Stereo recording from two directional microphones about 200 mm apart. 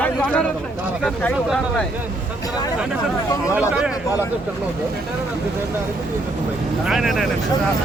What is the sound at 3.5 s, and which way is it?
Speech, 5° right (ahead or behind).